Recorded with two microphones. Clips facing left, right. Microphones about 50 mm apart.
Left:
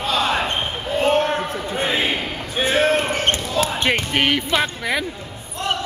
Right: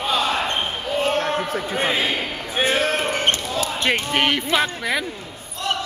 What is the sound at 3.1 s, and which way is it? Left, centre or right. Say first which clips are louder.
Basketball bounce: left 1 dB; centre.